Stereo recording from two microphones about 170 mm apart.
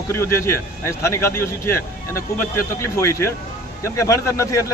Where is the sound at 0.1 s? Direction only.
15° left (ahead or behind).